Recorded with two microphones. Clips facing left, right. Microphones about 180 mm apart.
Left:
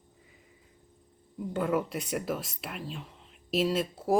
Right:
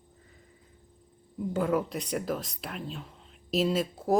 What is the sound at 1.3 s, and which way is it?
Speech, centre (ahead or behind).